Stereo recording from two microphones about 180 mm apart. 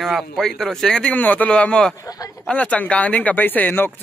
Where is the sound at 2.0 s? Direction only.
20° left (ahead or behind).